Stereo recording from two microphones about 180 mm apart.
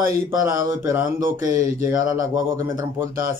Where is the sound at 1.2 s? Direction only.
50° right (ahead or behind).